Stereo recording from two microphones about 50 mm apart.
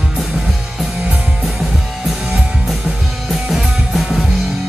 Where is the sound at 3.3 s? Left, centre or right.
Centre.